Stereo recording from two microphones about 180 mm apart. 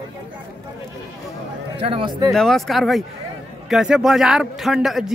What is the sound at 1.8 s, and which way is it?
Speech, 30° right (ahead or behind).